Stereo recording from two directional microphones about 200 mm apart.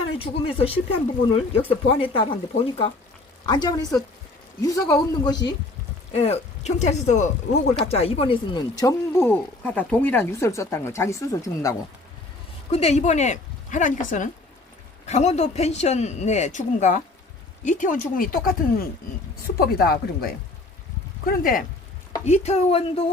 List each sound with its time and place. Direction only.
0.1 s speech: 30° left (ahead or behind)
6.1 s speech: 30° left (ahead or behind); by 11.7 s 15° left (ahead or behind)
12.7 s a man's voice: 30° left (ahead or behind)
22.2 s a man's voice: 35° left (ahead or behind)